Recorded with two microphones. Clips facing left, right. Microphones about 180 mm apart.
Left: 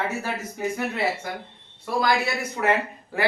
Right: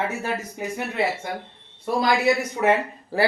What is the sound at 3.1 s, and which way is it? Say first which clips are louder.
Speech: right 3 dB; 35° right (ahead or behind).